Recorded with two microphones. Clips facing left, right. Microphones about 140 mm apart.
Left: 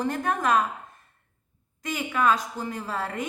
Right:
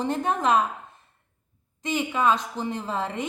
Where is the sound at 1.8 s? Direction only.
25° right (ahead or behind).